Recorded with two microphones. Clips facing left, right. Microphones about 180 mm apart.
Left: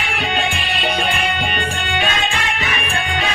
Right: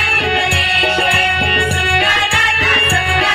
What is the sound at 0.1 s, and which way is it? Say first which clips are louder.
Music: right 5 dB; 65° right (ahead or behind).